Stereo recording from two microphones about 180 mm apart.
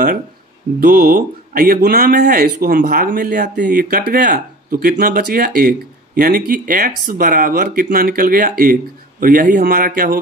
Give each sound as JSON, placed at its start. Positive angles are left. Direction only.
{"t": 0.7, "sound": "speech", "side_deg": -55}
{"t": 3.5, "sound": "speech", "side_deg": -60}